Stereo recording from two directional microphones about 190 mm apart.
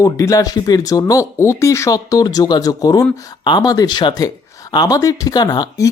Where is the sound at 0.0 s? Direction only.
15° left (ahead or behind).